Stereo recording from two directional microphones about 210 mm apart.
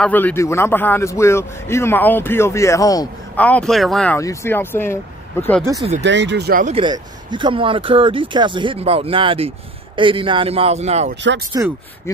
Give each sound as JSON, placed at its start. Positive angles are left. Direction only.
{"t": 0.0, "sound": "a man's voice", "side_deg": 10}
{"t": 5.9, "sound": "speech", "side_deg": -55}
{"t": 6.6, "sound": "speech", "side_deg": -25}
{"t": 11.6, "sound": "speech", "side_deg": -15}